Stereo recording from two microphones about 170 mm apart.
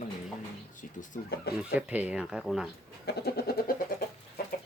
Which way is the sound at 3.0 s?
65° left (ahead or behind).